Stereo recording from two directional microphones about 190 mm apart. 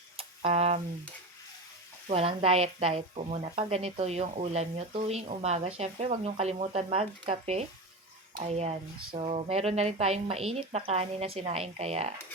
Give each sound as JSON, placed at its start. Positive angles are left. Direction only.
{"t": 0.2, "sound": "tick-tock", "side_deg": -30}
{"t": 2.0, "sound": "speech", "side_deg": -30}